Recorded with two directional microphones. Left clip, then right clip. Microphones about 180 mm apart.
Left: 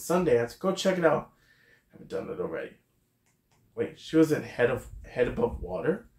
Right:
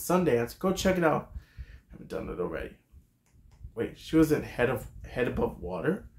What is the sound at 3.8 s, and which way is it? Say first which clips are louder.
Speech: left 1 dB; 25° right (ahead or behind).